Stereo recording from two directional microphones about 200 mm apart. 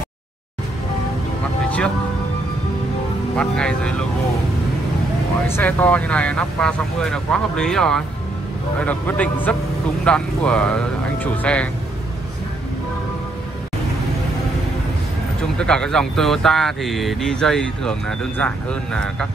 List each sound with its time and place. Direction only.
3.3 s speech: 5° left (ahead or behind)
5.5 s speech: 10° left (ahead or behind)
15.6 s speech: 5° left (ahead or behind)